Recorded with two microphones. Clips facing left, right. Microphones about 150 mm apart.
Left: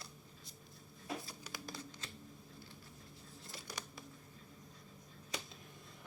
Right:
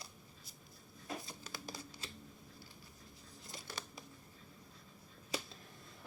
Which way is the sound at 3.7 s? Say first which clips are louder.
Even; 15° left (ahead or behind).